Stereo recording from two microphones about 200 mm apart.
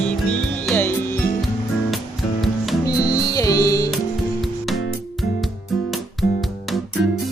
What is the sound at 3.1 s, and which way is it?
Music, 20° left (ahead or behind).